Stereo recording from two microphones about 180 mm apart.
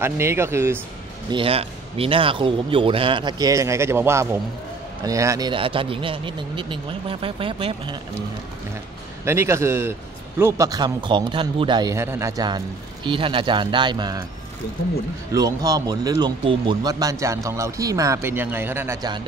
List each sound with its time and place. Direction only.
0.0 s speech: 15° right (ahead or behind)
1.3 s speech: 30° right (ahead or behind)
9.2 s speech: 15° right (ahead or behind)
15.3 s speech: 20° right (ahead or behind)